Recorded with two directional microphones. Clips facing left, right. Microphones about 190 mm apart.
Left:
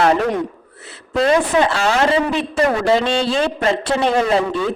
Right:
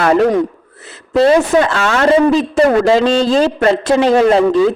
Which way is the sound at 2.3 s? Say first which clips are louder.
Right 7 dB; 40° right (ahead or behind).